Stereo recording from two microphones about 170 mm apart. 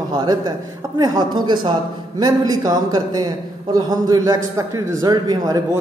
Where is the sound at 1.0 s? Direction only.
25° right (ahead or behind).